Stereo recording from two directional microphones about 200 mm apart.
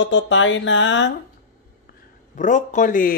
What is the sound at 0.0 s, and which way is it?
Speech, 65° left (ahead or behind).